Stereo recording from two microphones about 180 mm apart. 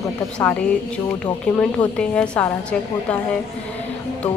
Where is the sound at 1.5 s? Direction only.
5° left (ahead or behind).